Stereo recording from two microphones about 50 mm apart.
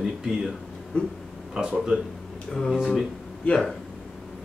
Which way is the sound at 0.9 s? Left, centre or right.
Left.